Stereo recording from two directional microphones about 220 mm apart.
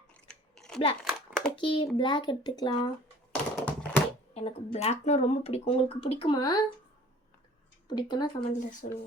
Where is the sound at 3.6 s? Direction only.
5° left (ahead or behind).